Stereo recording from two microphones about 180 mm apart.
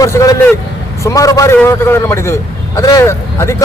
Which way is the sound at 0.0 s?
20° left (ahead or behind).